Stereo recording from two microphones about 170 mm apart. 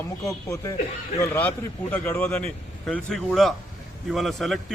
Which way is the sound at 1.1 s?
15° left (ahead or behind).